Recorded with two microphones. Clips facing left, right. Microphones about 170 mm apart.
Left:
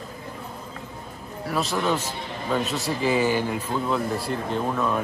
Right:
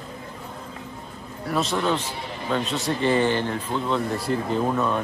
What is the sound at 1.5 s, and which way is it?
Speech, centre (ahead or behind).